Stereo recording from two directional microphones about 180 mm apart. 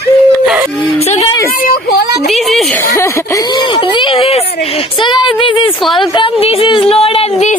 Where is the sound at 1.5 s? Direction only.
50° left (ahead or behind).